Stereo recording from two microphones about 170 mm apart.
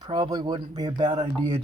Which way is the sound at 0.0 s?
25° right (ahead or behind).